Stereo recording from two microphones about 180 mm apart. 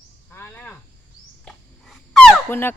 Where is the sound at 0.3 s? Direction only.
10° left (ahead or behind).